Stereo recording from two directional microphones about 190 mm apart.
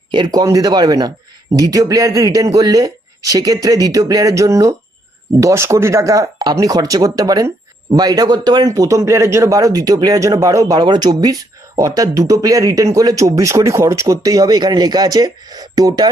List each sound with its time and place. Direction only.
0.1 s speech: 25° right (ahead or behind)